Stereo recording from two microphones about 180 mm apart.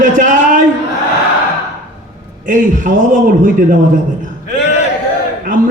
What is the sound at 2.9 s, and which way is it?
Speech, 45° right (ahead or behind).